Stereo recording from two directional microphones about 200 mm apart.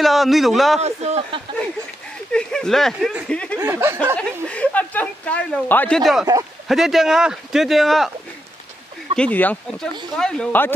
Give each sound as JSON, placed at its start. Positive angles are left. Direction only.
{"t": 0.0, "sound": "speech", "side_deg": 0}
{"t": 0.7, "sound": "speech", "side_deg": -35}
{"t": 2.3, "sound": "speech", "side_deg": 5}
{"t": 3.5, "sound": "speech", "side_deg": -15}
{"t": 4.2, "sound": "speech", "side_deg": 5}
{"t": 9.1, "sound": "speech", "side_deg": 5}